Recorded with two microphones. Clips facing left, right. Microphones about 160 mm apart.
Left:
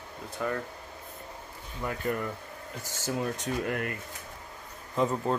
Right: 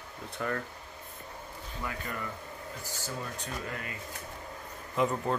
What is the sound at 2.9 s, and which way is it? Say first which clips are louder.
Speech: left 9 dB; 90° left.